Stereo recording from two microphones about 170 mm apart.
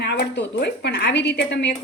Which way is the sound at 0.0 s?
90° left.